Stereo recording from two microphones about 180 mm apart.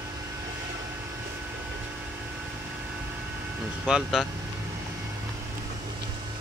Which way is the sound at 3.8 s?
Centre (ahead or behind).